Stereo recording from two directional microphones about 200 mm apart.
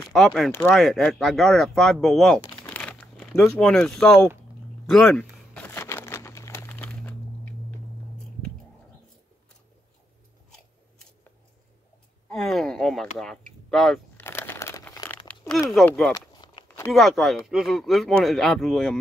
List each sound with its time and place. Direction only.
0.0 s speech: centre (ahead or behind)
2.5 s crumpling: 5° left (ahead or behind)
12.3 s a sound: centre (ahead or behind)
14.2 s crumpling: 10° left (ahead or behind)
15.7 s speech: 5° left (ahead or behind)
16.2 s a sound: 20° left (ahead or behind)
16.9 s speech: centre (ahead or behind)